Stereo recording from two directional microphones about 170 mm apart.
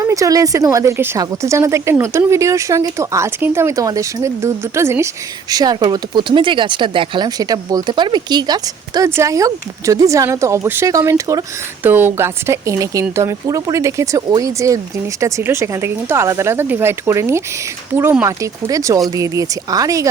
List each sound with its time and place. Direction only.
0.1 s speech: 20° right (ahead or behind)